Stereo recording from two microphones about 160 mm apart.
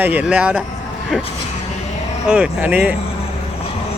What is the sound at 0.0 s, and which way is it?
Speech, 10° right (ahead or behind).